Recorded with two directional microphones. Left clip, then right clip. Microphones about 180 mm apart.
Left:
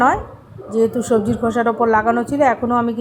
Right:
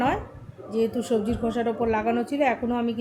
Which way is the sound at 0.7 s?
15° left (ahead or behind).